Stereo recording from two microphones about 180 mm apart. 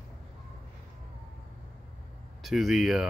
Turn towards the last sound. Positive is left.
turn(degrees=0)  # may be behind; listen again after turning